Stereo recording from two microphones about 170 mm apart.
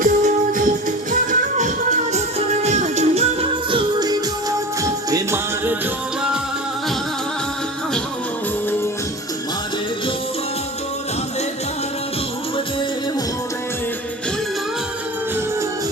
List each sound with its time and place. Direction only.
0.0 s music: 50° right (ahead or behind)
3.7 s music: 25° right (ahead or behind)